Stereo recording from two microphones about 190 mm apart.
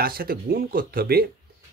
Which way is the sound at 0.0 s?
50° right (ahead or behind).